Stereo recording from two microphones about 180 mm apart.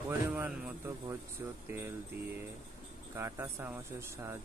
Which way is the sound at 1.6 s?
15° right (ahead or behind).